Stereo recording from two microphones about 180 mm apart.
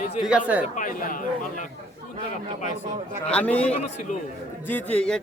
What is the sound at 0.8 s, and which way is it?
Speech, 50° left (ahead or behind).